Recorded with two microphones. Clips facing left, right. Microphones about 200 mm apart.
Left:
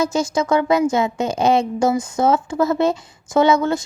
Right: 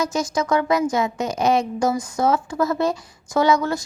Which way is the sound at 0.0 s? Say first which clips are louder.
Left 3 dB; 30° left (ahead or behind).